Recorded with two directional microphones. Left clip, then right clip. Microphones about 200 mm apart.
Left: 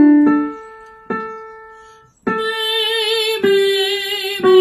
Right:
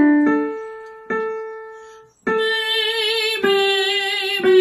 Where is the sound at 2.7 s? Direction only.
10° left (ahead or behind).